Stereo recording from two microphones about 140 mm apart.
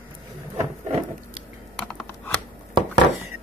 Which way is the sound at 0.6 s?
50° right (ahead or behind).